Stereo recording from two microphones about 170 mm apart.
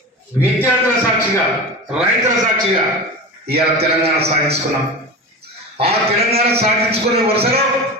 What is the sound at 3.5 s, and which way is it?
A man's voice, 35° right (ahead or behind).